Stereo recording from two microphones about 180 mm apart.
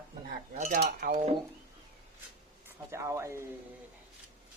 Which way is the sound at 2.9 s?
15° right (ahead or behind).